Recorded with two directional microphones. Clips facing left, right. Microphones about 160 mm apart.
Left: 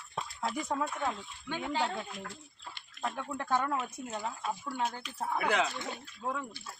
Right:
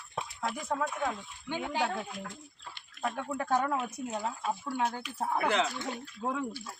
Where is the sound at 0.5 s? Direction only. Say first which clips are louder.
Even; centre (ahead or behind).